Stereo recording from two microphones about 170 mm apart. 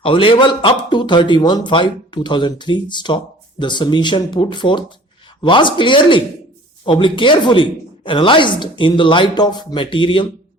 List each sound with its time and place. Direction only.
0.0 s speech: 30° left (ahead or behind)